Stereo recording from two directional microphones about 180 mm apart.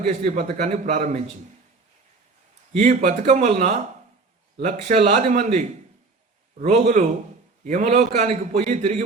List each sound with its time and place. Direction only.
0.1 s a man's voice: 40° right (ahead or behind)
2.7 s a man's voice: 40° right (ahead or behind)